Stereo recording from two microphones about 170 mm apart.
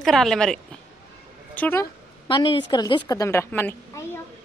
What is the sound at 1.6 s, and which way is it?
Speech, 10° left (ahead or behind).